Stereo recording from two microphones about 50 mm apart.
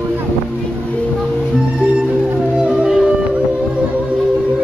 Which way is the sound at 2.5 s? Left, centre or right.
Centre.